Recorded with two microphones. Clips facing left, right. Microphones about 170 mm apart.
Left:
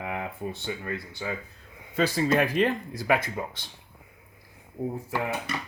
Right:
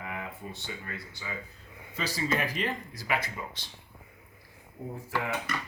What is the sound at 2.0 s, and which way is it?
Speech, 55° left (ahead or behind).